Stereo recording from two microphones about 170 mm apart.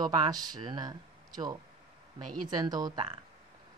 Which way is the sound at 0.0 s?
25° right (ahead or behind).